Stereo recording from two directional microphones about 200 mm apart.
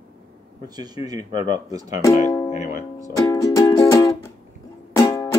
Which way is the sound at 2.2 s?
15° left (ahead or behind).